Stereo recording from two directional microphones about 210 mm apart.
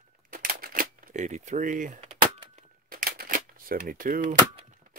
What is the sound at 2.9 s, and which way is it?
Cap gun, 45° right (ahead or behind).